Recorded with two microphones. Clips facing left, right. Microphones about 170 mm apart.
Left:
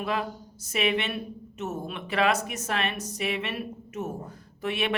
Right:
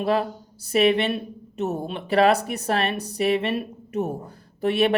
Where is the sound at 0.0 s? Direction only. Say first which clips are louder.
Right 7 dB; 35° right (ahead or behind).